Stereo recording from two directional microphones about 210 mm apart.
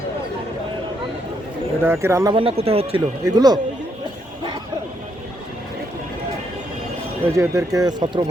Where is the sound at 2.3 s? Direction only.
25° right (ahead or behind).